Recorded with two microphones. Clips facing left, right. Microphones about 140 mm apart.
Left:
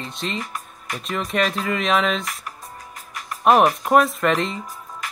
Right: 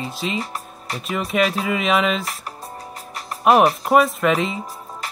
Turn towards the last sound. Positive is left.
turn(degrees=-35)  # may be behind; listen again after turning